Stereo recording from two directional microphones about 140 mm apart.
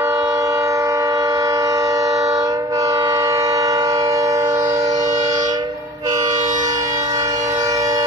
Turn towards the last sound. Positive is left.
turn(degrees=-25)  # may be behind; listen again after turning